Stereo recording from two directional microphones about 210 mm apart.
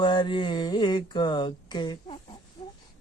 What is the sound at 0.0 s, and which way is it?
Music, 20° left (ahead or behind).